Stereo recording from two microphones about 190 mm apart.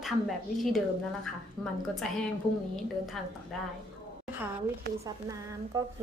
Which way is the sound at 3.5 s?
Centre (ahead or behind).